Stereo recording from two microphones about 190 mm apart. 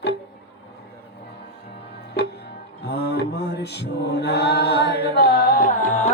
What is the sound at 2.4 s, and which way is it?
Music, 60° left (ahead or behind).